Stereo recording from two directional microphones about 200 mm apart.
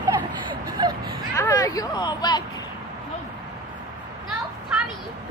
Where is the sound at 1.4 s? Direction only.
15° left (ahead or behind).